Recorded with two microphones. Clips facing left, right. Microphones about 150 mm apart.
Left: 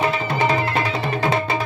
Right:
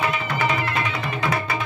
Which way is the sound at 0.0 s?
30° left (ahead or behind).